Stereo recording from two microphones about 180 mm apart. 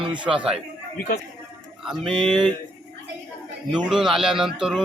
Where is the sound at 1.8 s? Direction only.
Centre (ahead or behind).